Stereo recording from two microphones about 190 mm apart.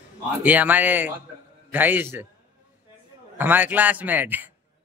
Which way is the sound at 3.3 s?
10° right (ahead or behind).